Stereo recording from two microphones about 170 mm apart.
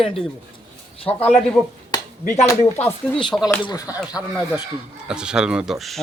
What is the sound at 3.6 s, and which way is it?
Speech, 25° left (ahead or behind).